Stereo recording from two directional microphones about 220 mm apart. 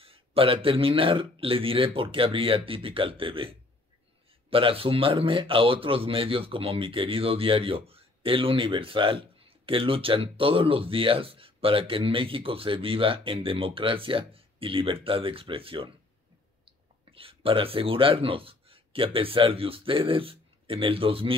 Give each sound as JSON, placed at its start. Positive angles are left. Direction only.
{"t": 0.0, "sound": "speech", "side_deg": -25}
{"t": 17.1, "sound": "speech", "side_deg": -25}